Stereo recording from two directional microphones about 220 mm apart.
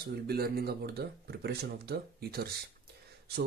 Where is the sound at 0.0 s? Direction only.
45° right (ahead or behind).